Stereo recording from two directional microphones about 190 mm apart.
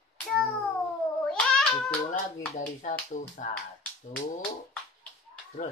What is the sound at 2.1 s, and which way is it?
Speech, 45° left (ahead or behind).